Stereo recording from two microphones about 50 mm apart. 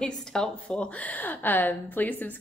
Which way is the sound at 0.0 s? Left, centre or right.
Centre.